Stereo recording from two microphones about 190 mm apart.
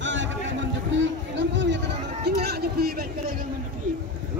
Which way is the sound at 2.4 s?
55° right (ahead or behind).